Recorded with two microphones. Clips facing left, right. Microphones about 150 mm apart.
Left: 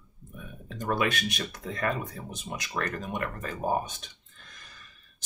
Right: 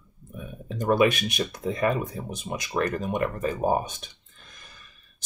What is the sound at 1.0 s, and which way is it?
Speech, 15° right (ahead or behind).